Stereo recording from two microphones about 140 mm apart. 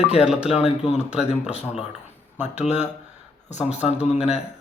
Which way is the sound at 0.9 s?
50° left (ahead or behind).